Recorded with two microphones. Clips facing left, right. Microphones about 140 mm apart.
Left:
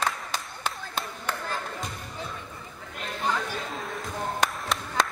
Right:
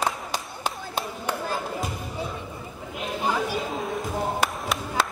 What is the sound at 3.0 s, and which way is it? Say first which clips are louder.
Chatter: right 3 dB; 10° right (ahead or behind).